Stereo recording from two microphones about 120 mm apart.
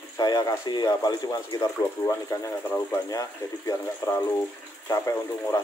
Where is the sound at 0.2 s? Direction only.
35° left (ahead or behind).